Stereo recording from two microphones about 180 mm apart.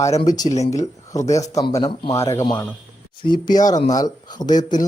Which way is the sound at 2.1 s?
15° left (ahead or behind).